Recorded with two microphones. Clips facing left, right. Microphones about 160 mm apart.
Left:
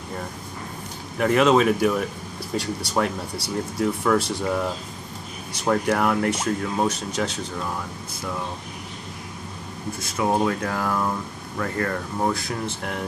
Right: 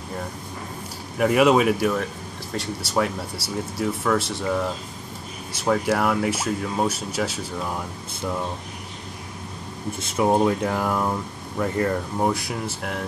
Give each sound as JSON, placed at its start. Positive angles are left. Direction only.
{"t": 1.1, "sound": "speech", "side_deg": -5}
{"t": 9.9, "sound": "speech", "side_deg": -25}